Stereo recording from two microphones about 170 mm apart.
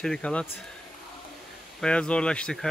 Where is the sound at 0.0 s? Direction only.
5° left (ahead or behind).